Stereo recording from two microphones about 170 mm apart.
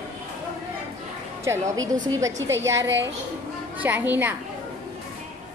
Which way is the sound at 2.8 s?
90° right.